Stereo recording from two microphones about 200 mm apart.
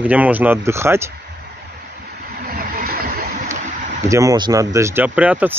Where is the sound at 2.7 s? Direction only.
45° right (ahead or behind).